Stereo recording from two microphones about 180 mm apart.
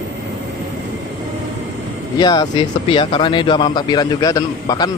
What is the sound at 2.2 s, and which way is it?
Speech, 20° left (ahead or behind).